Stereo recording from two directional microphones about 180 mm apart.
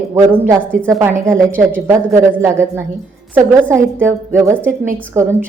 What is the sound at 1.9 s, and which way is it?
A woman's voice, 15° right (ahead or behind).